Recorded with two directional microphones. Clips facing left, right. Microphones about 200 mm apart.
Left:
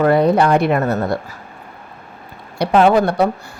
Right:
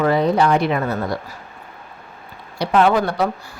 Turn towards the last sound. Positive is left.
turn(degrees=60)  # may be behind; listen again after turning